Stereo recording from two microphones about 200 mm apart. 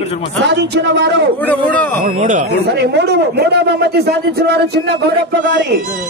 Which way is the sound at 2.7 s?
55° right (ahead or behind).